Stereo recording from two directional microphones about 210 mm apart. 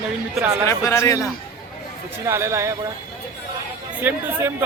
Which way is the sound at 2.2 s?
15° right (ahead or behind).